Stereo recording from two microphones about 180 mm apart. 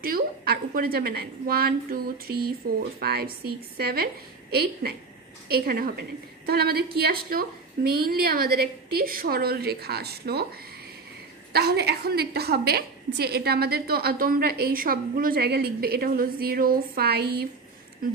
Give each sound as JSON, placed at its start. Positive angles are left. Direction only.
{"t": 0.0, "sound": "a woman's voice", "side_deg": -55}
{"t": 11.5, "sound": "a woman's voice", "side_deg": -65}